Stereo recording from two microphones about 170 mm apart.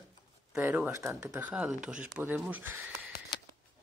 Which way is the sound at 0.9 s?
15° right (ahead or behind).